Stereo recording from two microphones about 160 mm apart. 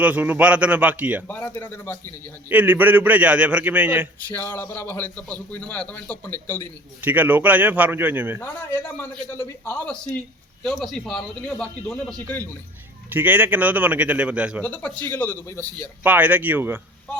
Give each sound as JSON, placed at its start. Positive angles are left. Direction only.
{"t": 0.0, "sound": "a man's voice", "side_deg": -10}
{"t": 1.3, "sound": "a man's voice", "side_deg": 10}
{"t": 2.5, "sound": "a man's voice", "side_deg": -10}
{"t": 4.3, "sound": "a man's voice", "side_deg": 15}
{"t": 7.0, "sound": "a man's voice", "side_deg": -10}
{"t": 8.4, "sound": "a man's voice", "side_deg": 15}
{"t": 13.1, "sound": "a man's voice", "side_deg": -10}
{"t": 14.6, "sound": "a man's voice", "side_deg": 10}
{"t": 16.0, "sound": "a man's voice", "side_deg": -10}